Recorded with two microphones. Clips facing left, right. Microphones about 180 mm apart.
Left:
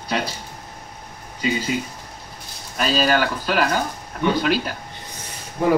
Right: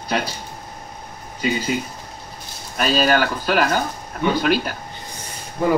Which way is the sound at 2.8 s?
55° right (ahead or behind).